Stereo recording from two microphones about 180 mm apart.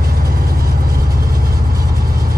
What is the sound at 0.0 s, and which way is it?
Vehicle, 55° right (ahead or behind).